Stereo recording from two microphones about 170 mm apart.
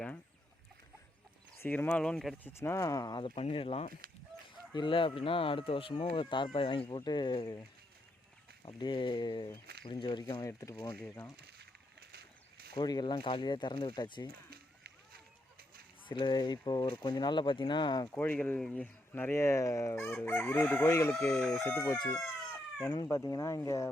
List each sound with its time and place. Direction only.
1.6 s speech: 10° left (ahead or behind)
2.5 s speech: 15° left (ahead or behind)
8.6 s speech: 25° left (ahead or behind)
11.3 s a sound: 70° right (ahead or behind)
12.7 s speech: 25° left (ahead or behind)
14.5 s run: 65° right (ahead or behind)
16.0 s speech: 25° left (ahead or behind)
18.1 s speech: 10° left (ahead or behind)
21.2 s crowing: 5° left (ahead or behind)
21.7 s speech: 15° left (ahead or behind)